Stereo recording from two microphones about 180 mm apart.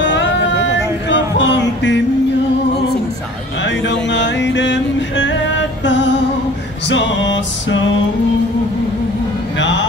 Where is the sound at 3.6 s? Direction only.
80° left.